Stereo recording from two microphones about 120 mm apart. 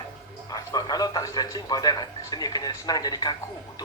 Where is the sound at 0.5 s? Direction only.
30° left (ahead or behind).